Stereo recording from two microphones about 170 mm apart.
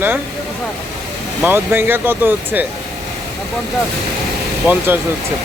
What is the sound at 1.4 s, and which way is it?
Speech, 10° right (ahead or behind).